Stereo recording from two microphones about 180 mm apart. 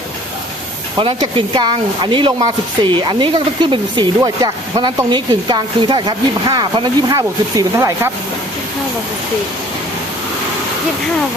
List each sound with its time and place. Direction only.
0.9 s speech: 30° right (ahead or behind)